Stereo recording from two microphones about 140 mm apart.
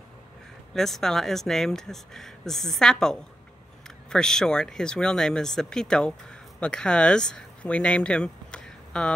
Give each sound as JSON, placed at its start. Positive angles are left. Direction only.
{"t": 0.7, "sound": "speech", "side_deg": 0}